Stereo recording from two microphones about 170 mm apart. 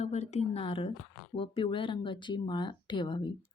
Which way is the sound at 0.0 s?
40° left (ahead or behind).